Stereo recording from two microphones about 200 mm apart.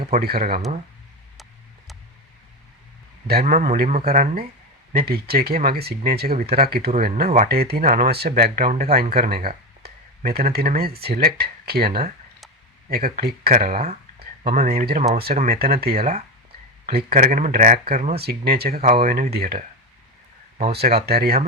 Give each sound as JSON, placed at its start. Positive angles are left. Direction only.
{"t": 0.2, "sound": "speech", "side_deg": -50}
{"t": 3.2, "sound": "speech", "side_deg": -50}
{"t": 17.2, "sound": "speech", "side_deg": -35}
{"t": 20.7, "sound": "speech", "side_deg": -50}